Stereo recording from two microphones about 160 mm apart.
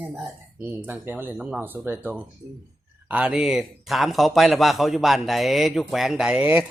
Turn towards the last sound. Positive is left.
turn(degrees=-10)  # may be behind; listen again after turning